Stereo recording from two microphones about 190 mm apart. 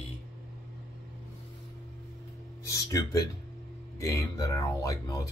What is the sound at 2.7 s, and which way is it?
Speech, 15° left (ahead or behind).